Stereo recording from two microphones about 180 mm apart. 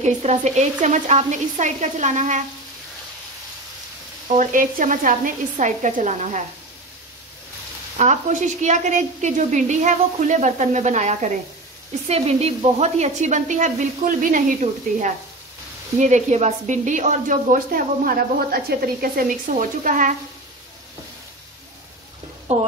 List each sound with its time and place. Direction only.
0.0 s a woman's voice: 40° right (ahead or behind)
4.3 s a woman's voice: 45° right (ahead or behind)
8.0 s a woman's voice: 40° right (ahead or behind)
22.5 s a woman's voice: 35° right (ahead or behind)